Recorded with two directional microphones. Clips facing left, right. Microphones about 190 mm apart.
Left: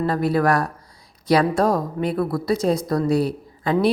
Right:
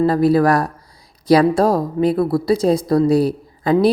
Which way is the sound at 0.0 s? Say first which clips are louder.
Right 6 dB; 35° right (ahead or behind).